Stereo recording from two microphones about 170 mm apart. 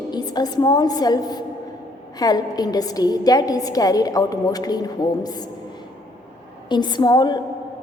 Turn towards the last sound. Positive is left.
turn(degrees=25)  # may be behind; listen again after turning